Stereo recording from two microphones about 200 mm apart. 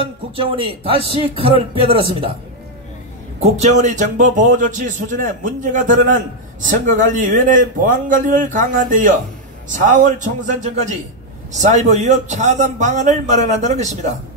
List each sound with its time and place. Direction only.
0.0 s speech: 25° right (ahead or behind)
3.3 s a man's voice: 35° right (ahead or behind)